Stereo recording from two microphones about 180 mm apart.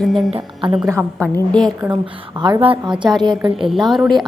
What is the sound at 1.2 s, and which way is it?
Speech, 5° left (ahead or behind).